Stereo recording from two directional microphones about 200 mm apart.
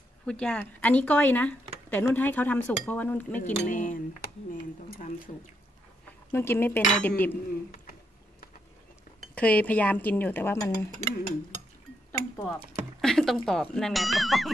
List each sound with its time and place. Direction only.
0.3 s speech: 5° left (ahead or behind)
3.5 s speech: 40° left (ahead or behind)
6.3 s speech: 10° left (ahead or behind)
9.3 s speech: 5° left (ahead or behind)
12.1 s mechanisms: 10° left (ahead or behind)
13.0 s speech: centre (ahead or behind)